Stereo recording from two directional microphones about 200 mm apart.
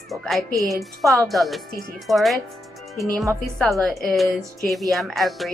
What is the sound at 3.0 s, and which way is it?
Speech, 15° right (ahead or behind).